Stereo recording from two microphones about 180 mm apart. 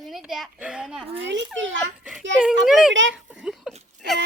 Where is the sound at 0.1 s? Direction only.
Centre (ahead or behind).